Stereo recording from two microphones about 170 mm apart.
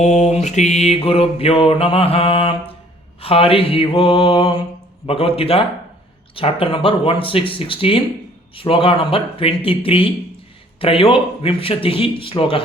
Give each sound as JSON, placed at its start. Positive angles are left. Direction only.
{"t": 0.0, "sound": "mantra", "side_deg": 40}